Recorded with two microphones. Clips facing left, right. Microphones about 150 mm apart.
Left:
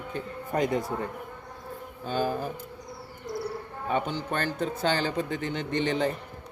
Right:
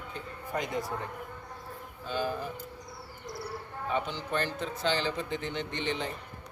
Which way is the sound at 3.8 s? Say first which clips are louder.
Left 4 dB; 50° left (ahead or behind).